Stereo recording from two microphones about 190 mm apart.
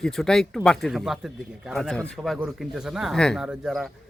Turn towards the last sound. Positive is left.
turn(degrees=0)  # may be behind; listen again after turning